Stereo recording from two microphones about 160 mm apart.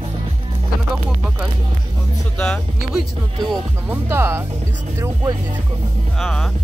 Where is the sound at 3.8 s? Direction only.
15° right (ahead or behind).